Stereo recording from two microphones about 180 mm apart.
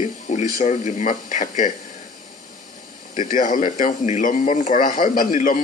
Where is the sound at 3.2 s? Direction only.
45° left (ahead or behind).